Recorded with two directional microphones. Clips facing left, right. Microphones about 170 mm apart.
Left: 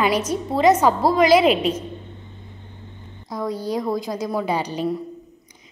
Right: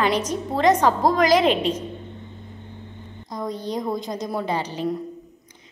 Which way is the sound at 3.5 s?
5° left (ahead or behind).